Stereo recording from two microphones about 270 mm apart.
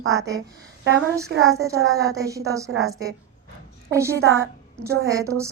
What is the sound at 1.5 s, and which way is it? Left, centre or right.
Speech, centre.